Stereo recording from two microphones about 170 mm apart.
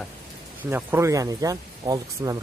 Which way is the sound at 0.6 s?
10° right (ahead or behind).